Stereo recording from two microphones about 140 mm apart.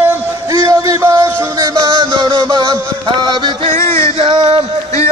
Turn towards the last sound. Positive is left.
turn(degrees=-40)  # may be behind; listen again after turning